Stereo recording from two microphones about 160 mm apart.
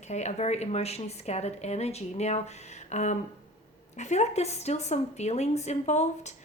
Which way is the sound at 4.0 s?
45° left (ahead or behind).